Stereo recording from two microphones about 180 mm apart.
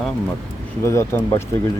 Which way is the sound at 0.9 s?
15° left (ahead or behind).